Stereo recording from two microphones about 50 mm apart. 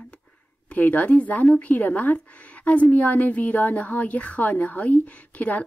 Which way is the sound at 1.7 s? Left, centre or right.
Left.